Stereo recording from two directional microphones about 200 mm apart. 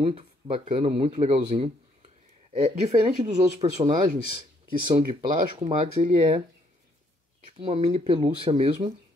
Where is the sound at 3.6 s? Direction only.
25° right (ahead or behind).